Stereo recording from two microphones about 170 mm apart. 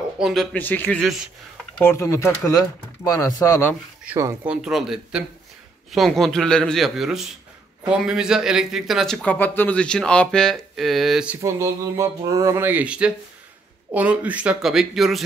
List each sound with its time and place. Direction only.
0.2 s speech: centre (ahead or behind)
1.0 s speech: centre (ahead or behind)
1.8 s speech: 15° left (ahead or behind)
4.0 s speech: 15° right (ahead or behind)
4.5 s speech: 5° right (ahead or behind)
11.4 s speech: 15° right (ahead or behind); by 15.2 s centre (ahead or behind)